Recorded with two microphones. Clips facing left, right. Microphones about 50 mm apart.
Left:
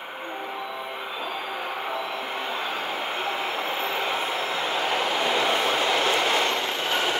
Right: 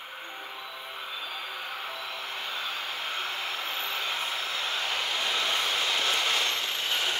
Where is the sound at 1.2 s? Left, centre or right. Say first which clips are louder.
Left 6 dB; left.